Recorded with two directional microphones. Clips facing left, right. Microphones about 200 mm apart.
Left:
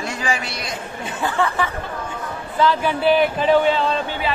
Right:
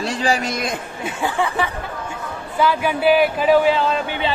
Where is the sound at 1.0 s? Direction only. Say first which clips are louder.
Even; 10° right (ahead or behind).